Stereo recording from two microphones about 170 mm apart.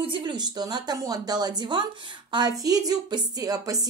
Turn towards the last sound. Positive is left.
turn(degrees=-20)  # may be behind; listen again after turning